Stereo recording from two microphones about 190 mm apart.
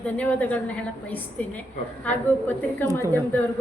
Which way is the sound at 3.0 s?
15° right (ahead or behind).